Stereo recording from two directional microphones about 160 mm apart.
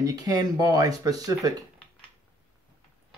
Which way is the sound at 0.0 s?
25° right (ahead or behind).